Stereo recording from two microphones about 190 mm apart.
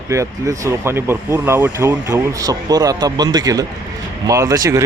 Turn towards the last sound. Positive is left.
turn(degrees=-20)  # may be behind; listen again after turning